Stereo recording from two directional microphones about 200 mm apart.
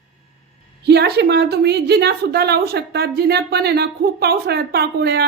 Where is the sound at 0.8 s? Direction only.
55° right (ahead or behind).